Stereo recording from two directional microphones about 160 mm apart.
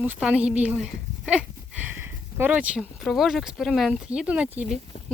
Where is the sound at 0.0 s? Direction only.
10° right (ahead or behind).